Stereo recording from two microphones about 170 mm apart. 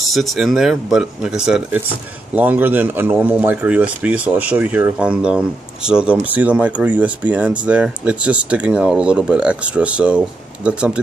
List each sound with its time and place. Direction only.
0.0 s speech: centre (ahead or behind)